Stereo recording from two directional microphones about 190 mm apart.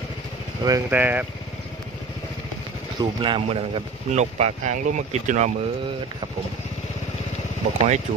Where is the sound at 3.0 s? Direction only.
25° right (ahead or behind).